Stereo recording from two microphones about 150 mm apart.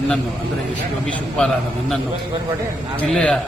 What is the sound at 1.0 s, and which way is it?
Speech, 5° left (ahead or behind).